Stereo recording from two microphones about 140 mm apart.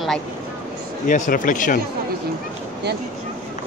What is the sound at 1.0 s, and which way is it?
Speech, 65° left (ahead or behind).